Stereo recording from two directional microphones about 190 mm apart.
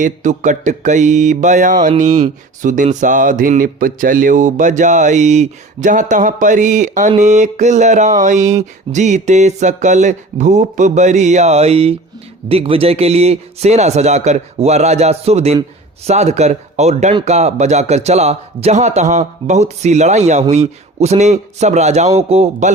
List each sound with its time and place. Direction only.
0.0 s mantra: 40° right (ahead or behind)